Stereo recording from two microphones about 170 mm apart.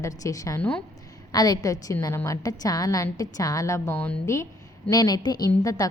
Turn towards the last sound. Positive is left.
turn(degrees=20)  # may be behind; listen again after turning